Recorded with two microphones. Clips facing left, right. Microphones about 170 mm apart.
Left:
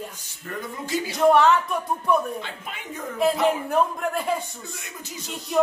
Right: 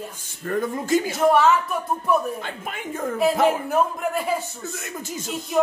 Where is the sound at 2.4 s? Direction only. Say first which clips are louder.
Right 5 dB; 50° right (ahead or behind).